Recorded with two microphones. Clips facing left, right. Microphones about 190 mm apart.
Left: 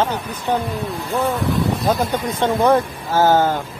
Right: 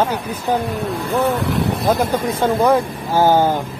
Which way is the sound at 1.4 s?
70° right (ahead or behind).